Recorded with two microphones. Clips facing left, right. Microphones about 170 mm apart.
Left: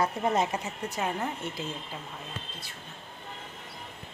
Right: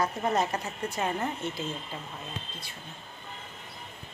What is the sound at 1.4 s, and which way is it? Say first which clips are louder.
Speech: right 2 dB; 10° left (ahead or behind).